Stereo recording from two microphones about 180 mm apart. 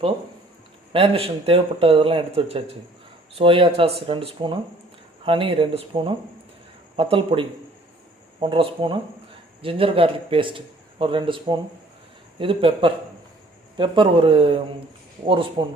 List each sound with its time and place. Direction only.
0.9 s a man's voice: 30° right (ahead or behind)